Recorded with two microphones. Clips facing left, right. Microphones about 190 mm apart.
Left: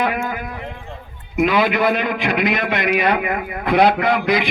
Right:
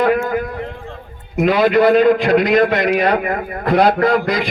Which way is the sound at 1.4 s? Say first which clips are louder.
Right 4 dB; 45° right (ahead or behind).